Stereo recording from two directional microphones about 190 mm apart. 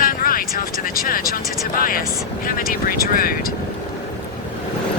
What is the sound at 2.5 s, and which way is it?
Vehicle, 50° left (ahead or behind).